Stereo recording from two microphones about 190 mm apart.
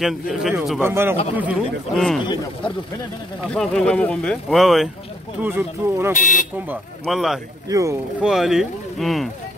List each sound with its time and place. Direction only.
0.0 s speech: centre (ahead or behind)
3.4 s speech: 5° left (ahead or behind)
6.1 s speech: 40° left (ahead or behind)
6.7 s speech: centre (ahead or behind)
7.6 s speech: 15° right (ahead or behind)
8.2 s speech: 5° right (ahead or behind)